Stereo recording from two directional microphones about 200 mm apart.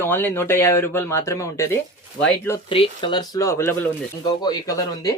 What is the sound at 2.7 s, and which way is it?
Speech, 25° left (ahead or behind).